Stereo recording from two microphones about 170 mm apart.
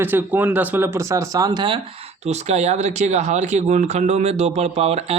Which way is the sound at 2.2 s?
40° right (ahead or behind).